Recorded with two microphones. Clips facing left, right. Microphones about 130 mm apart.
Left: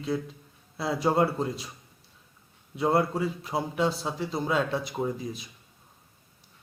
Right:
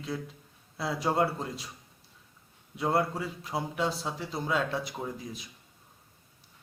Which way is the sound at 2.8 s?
5° left (ahead or behind).